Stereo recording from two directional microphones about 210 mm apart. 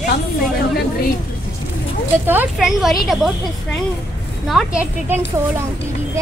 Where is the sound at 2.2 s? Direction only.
5° right (ahead or behind).